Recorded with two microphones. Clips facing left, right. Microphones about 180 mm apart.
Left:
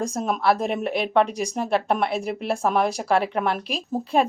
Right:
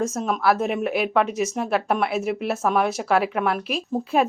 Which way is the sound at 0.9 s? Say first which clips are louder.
Left 1 dB; 30° left (ahead or behind).